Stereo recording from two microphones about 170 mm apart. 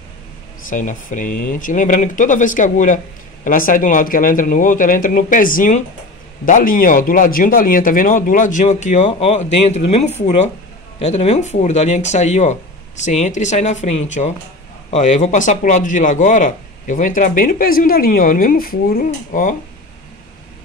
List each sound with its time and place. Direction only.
0.7 s a man's voice: 50° left (ahead or behind)